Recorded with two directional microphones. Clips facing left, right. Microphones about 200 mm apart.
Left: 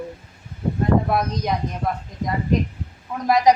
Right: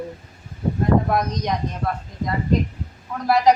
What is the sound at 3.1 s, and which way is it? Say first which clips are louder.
Speech: left 1 dB; 15° left (ahead or behind).